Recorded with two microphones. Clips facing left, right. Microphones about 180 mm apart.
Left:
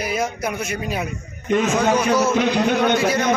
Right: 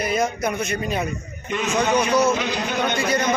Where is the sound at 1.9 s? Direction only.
5° left (ahead or behind).